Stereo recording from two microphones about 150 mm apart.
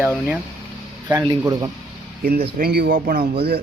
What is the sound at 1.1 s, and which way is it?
Speech, 25° right (ahead or behind).